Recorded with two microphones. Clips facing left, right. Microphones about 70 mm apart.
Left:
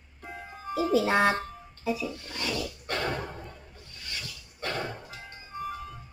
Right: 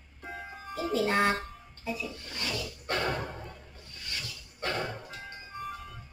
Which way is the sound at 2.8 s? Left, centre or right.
Right.